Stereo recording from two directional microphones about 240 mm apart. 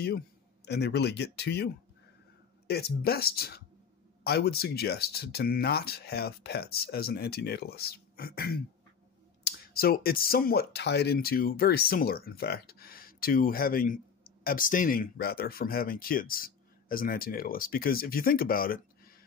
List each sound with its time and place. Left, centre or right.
0.7 s speech: left
2.7 s speech: left
9.8 s speech: left